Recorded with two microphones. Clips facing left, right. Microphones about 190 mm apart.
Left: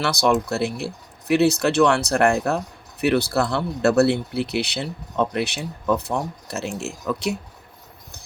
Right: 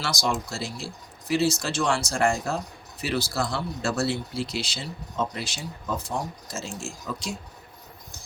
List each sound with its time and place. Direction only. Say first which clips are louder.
0.0 s speech: left 8 dB; 60° left (ahead or behind)